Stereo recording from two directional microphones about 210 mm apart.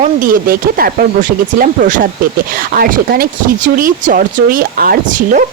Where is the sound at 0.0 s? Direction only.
40° right (ahead or behind).